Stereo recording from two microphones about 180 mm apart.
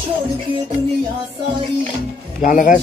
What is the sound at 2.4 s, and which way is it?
Speech, 45° left (ahead or behind).